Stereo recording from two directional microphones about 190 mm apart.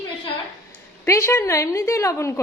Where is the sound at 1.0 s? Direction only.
15° left (ahead or behind).